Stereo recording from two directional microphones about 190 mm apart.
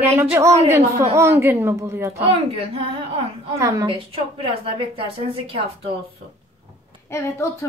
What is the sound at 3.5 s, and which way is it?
Speech, 15° right (ahead or behind).